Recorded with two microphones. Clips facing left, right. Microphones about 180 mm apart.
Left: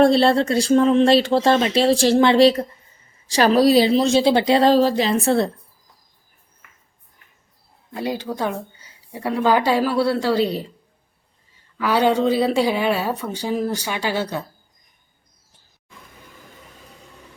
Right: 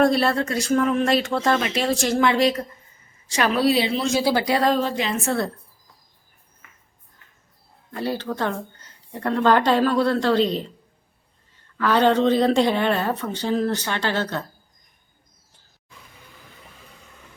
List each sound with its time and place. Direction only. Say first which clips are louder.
0.0 s a woman's voice: left 4 dB; 30° left (ahead or behind)
7.9 s a woman's voice: left 1 dB; 15° left (ahead or behind)
11.8 s a woman's voice: even; 10° left (ahead or behind)